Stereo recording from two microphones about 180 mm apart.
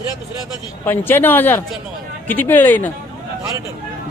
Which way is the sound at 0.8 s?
10° left (ahead or behind).